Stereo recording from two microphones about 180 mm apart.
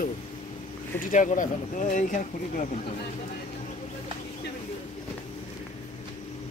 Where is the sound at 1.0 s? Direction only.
45° left (ahead or behind).